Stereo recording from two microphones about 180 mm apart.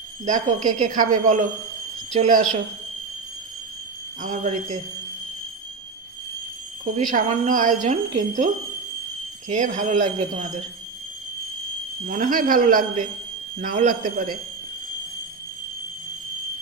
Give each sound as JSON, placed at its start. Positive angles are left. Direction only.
{"t": 0.3, "sound": "speech", "side_deg": -45}
{"t": 4.2, "sound": "speech", "side_deg": -45}
{"t": 6.9, "sound": "speech", "side_deg": -40}
{"t": 9.5, "sound": "speech", "side_deg": -45}
{"t": 12.0, "sound": "speech", "side_deg": -45}